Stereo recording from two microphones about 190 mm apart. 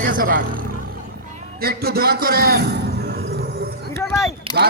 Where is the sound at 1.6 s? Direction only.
55° right (ahead or behind).